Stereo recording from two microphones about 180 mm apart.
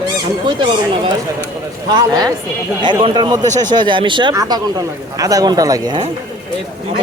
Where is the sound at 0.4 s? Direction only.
25° right (ahead or behind).